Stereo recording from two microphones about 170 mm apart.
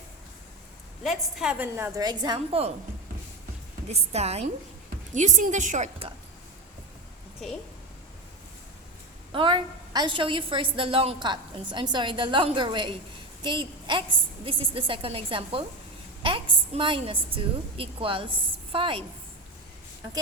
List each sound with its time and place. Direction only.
1.0 s a woman's voice: centre (ahead or behind); by 2.7 s 35° right (ahead or behind)
3.8 s a woman's voice: 40° right (ahead or behind)
9.3 s a woman's voice: 30° right (ahead or behind)